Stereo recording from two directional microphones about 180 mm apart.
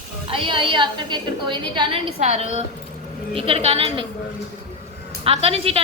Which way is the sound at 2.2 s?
40° right (ahead or behind).